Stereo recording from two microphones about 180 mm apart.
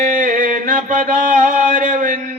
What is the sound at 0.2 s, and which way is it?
Mantra, 45° right (ahead or behind).